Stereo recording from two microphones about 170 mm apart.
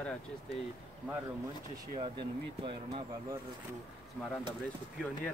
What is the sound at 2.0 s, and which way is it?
Speech, 30° right (ahead or behind).